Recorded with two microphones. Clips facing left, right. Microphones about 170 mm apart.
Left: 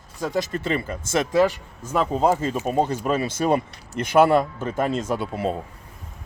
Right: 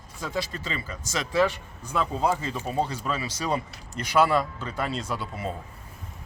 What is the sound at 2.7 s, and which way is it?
Speech, 50° left (ahead or behind).